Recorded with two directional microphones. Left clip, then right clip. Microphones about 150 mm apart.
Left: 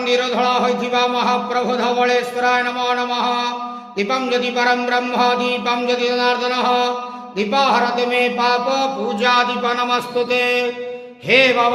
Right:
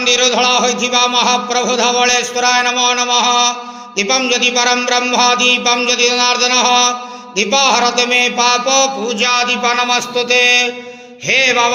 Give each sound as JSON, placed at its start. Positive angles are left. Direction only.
{"t": 0.0, "sound": "a man's voice", "side_deg": -5}